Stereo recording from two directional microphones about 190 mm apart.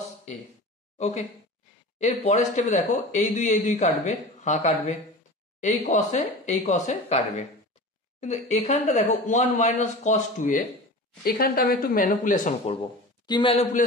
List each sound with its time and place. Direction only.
0.9 s speech: 40° left (ahead or behind)
11.2 s speech: 50° left (ahead or behind)
13.3 s a man's voice: 25° left (ahead or behind)